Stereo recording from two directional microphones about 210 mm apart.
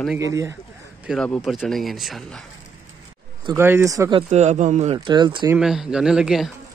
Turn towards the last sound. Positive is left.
turn(degrees=0)  # may be behind; listen again after turning